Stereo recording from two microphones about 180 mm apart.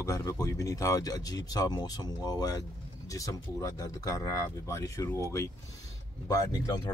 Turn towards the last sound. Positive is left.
turn(degrees=20)  # may be behind; listen again after turning